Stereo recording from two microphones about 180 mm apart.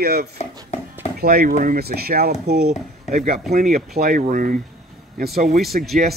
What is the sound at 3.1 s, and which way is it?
Speech, 45° right (ahead or behind).